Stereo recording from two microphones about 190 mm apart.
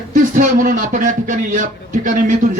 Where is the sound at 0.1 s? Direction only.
45° right (ahead or behind).